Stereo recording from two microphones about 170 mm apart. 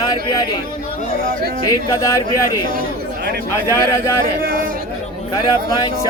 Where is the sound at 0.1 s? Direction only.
25° left (ahead or behind).